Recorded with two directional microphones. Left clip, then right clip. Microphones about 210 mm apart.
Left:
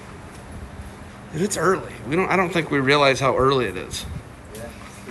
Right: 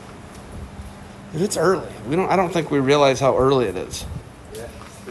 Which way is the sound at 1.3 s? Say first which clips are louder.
Right 2 dB; 15° right (ahead or behind).